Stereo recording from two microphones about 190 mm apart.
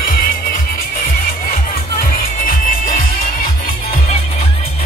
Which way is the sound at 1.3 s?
50° left (ahead or behind).